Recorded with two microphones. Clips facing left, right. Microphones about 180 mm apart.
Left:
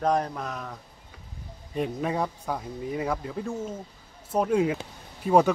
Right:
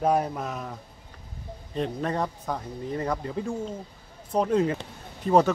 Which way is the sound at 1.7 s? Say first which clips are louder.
Even; 10° left (ahead or behind).